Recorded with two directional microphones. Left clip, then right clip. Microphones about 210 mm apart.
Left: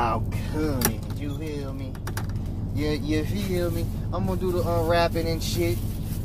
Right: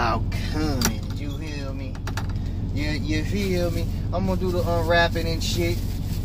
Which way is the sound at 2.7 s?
15° left (ahead or behind).